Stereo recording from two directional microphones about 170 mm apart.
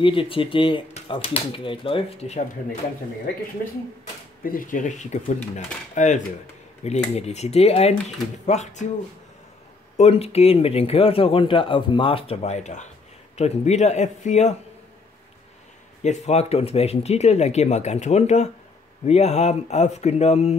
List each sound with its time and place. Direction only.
0.0 s speech: 30° left (ahead or behind)
4.4 s speech: 55° left (ahead or behind)
9.9 s speech: 35° left (ahead or behind)
16.0 s speech: 40° left (ahead or behind)